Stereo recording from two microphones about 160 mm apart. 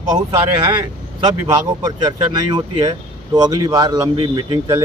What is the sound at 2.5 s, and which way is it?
Speech, 25° right (ahead or behind).